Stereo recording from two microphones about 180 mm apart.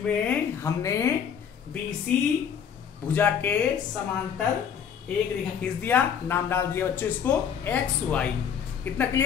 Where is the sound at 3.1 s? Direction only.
10° left (ahead or behind).